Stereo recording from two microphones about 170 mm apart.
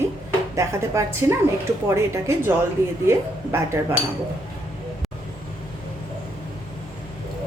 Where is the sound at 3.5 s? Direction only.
15° right (ahead or behind).